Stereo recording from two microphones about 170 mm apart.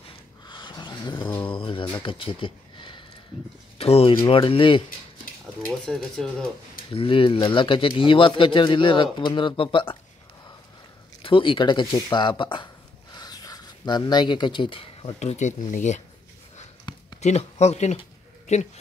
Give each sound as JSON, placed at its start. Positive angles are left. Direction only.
{"t": 0.5, "sound": "a sound", "side_deg": 25}
{"t": 3.7, "sound": "speech", "side_deg": 35}
{"t": 5.7, "sound": "speech", "side_deg": 0}
{"t": 6.9, "sound": "speech", "side_deg": 30}
{"t": 11.2, "sound": "speech", "side_deg": 30}
{"t": 16.9, "sound": "a sound", "side_deg": 25}
{"t": 17.2, "sound": "speech", "side_deg": 40}